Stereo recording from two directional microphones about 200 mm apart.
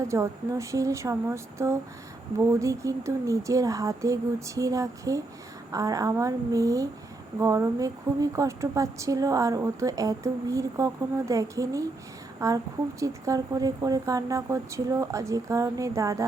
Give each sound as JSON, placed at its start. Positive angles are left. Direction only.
{"t": 0.0, "sound": "a woman's voice", "side_deg": -15}